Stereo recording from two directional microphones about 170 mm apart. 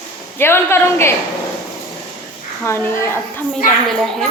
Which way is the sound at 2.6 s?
15° left (ahead or behind).